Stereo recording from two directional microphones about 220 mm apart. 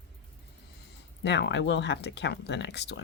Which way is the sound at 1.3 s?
50° left (ahead or behind).